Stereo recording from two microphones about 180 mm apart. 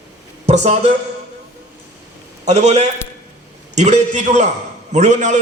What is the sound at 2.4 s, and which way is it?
A man's voice, 40° right (ahead or behind).